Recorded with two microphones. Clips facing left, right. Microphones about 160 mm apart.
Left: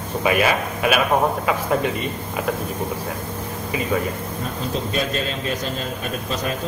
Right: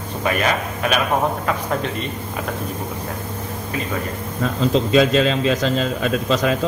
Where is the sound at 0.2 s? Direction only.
5° left (ahead or behind).